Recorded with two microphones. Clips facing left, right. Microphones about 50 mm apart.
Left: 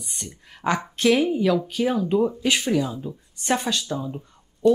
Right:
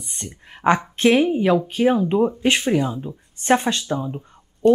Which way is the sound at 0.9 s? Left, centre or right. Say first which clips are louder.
Left 1 dB; right.